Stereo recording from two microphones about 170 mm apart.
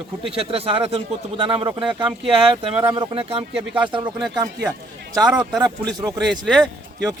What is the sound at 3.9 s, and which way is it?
Speech, 25° right (ahead or behind).